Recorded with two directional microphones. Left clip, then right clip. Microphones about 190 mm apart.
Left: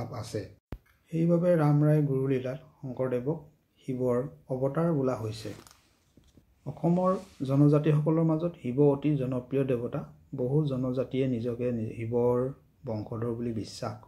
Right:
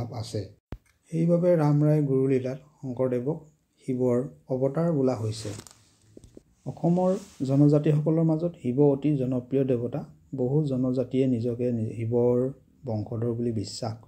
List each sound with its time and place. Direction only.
0.0 s speech: 20° right (ahead or behind)
6.6 s speech: 15° right (ahead or behind)